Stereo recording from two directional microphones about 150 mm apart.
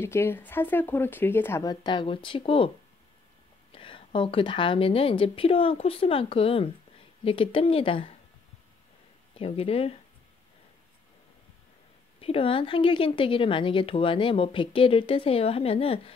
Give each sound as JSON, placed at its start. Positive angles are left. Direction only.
{"t": 0.0, "sound": "speech", "side_deg": 15}
{"t": 3.7, "sound": "speech", "side_deg": 35}
{"t": 9.4, "sound": "speech", "side_deg": 40}
{"t": 12.2, "sound": "speech", "side_deg": 40}